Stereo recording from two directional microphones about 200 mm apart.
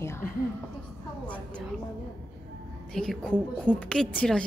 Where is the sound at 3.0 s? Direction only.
5° left (ahead or behind).